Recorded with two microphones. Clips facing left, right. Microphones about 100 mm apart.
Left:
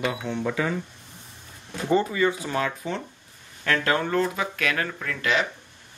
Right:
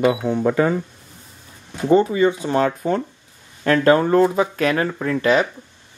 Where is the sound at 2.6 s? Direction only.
45° right (ahead or behind).